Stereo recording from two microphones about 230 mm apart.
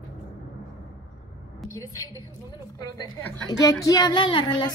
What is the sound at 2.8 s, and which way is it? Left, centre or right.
A woman's voice, centre.